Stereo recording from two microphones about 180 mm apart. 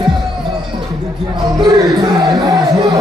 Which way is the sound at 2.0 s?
20° right (ahead or behind).